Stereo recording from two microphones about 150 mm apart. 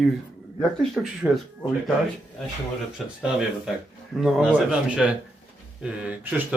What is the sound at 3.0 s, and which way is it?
Speech, centre (ahead or behind).